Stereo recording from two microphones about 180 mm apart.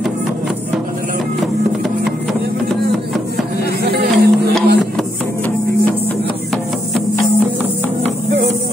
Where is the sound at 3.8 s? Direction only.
60° right (ahead or behind).